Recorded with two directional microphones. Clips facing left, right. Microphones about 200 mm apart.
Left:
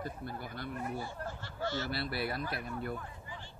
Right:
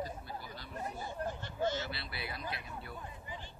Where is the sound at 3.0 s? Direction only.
20° right (ahead or behind).